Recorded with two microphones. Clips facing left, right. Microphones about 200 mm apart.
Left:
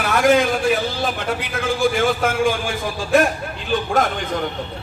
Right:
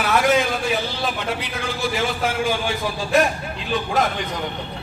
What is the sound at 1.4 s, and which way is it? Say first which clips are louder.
Speech: left 6 dB; 50° left (ahead or behind).